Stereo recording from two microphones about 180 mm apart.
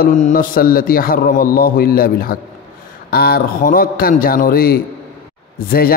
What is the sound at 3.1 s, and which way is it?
A man's voice, 60° left (ahead or behind).